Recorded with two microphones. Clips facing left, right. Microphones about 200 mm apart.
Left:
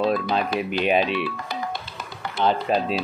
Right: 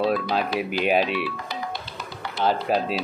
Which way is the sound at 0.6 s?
5° right (ahead or behind).